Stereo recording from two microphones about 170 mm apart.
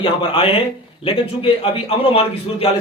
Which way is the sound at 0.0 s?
30° left (ahead or behind).